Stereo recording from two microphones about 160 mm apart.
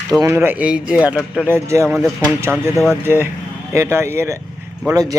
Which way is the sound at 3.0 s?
15° right (ahead or behind).